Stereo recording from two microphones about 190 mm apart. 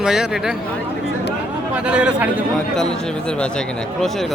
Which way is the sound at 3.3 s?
5° left (ahead or behind).